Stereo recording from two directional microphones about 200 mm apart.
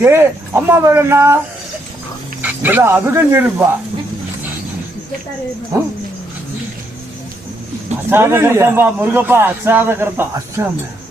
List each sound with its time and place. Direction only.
0.0 s a man's voice: 10° right (ahead or behind)
2.4 s a man's voice: 10° right (ahead or behind)
5.7 s a man's voice: 15° right (ahead or behind)
8.1 s a man's voice: 10° right (ahead or behind)